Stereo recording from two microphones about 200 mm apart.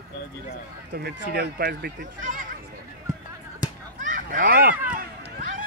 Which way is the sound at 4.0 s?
40° right (ahead or behind).